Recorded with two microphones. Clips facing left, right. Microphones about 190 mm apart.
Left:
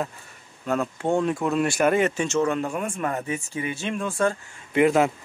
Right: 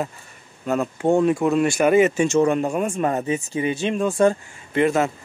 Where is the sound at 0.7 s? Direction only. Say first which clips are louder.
Right 4 dB; 5° right (ahead or behind).